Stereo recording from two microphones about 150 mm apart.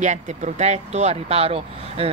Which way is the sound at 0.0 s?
55° right (ahead or behind).